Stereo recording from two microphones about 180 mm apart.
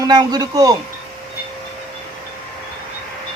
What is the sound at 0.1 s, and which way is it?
Speech, 20° right (ahead or behind).